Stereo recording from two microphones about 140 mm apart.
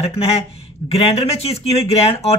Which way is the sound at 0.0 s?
45° left (ahead or behind).